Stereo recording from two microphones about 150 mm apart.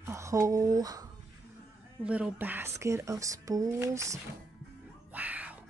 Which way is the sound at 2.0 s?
10° right (ahead or behind).